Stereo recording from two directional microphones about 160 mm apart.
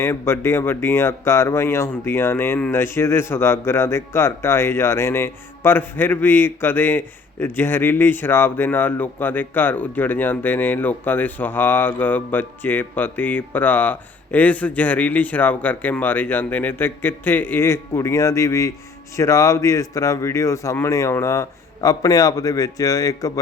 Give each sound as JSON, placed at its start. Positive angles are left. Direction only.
{"t": 0.0, "sound": "speech", "side_deg": 15}